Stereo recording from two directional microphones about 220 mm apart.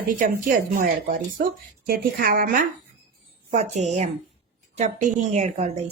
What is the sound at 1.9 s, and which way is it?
Speech, 40° right (ahead or behind).